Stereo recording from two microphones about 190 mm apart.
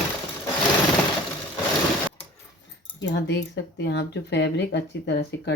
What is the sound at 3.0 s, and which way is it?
Speech, 65° left (ahead or behind).